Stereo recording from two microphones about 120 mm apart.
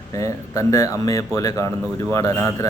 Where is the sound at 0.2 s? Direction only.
25° left (ahead or behind).